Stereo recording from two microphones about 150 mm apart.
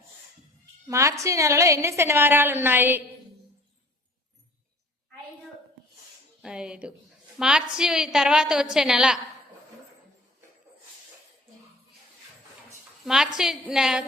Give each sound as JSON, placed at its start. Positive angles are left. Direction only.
{"t": 0.9, "sound": "a woman's voice", "side_deg": -20}
{"t": 6.4, "sound": "a woman's voice", "side_deg": -5}
{"t": 13.1, "sound": "a woman's voice", "side_deg": -5}